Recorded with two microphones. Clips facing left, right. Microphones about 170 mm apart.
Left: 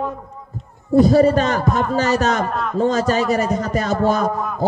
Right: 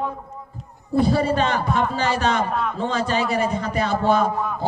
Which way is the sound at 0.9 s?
40° left (ahead or behind).